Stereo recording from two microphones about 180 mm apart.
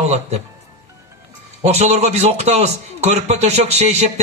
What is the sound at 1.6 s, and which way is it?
Speech, 40° right (ahead or behind).